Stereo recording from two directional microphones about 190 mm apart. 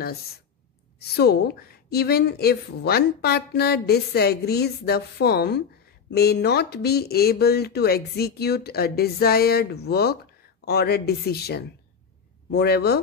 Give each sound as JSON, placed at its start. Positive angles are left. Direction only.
{"t": 0.9, "sound": "a woman's voice", "side_deg": 55}